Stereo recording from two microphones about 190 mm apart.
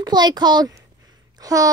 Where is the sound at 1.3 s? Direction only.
20° right (ahead or behind).